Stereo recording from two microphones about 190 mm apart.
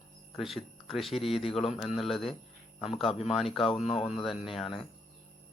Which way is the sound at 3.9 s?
30° left (ahead or behind).